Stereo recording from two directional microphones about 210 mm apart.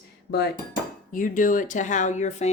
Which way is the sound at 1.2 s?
40° left (ahead or behind).